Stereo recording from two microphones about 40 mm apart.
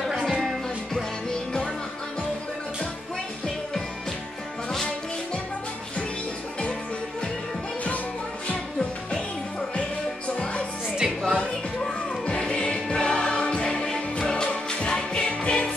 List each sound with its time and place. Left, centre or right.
0.2 s music: centre
9.8 s music: left